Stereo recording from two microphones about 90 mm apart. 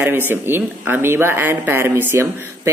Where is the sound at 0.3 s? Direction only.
25° right (ahead or behind).